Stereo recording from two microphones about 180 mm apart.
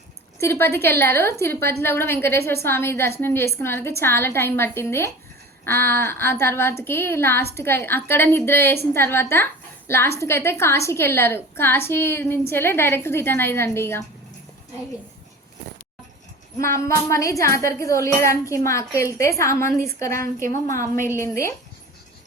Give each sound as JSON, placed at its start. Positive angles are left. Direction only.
{"t": 0.3, "sound": "a woman's voice", "side_deg": 15}
{"t": 16.6, "sound": "a woman's voice", "side_deg": 15}